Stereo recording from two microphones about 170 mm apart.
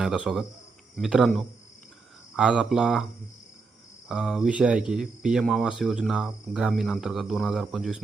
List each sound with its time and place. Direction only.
0.0 s speech: 5° right (ahead or behind)
4.1 s speech: 5° right (ahead or behind)